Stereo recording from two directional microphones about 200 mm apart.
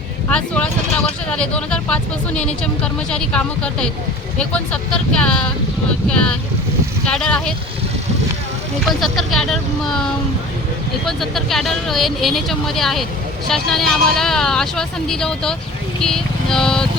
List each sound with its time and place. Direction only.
0.3 s speech: 5° left (ahead or behind)
7.1 s speech: 5° left (ahead or behind)
8.8 s speech: centre (ahead or behind)
16.0 s music: 5° left (ahead or behind)